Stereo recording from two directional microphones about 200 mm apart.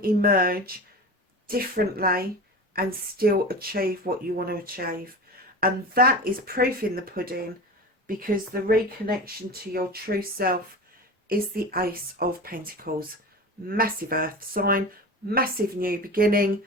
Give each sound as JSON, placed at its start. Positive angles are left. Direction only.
{"t": 0.0, "sound": "speech", "side_deg": -50}